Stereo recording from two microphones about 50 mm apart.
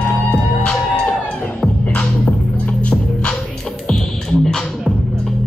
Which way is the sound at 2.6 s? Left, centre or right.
Left.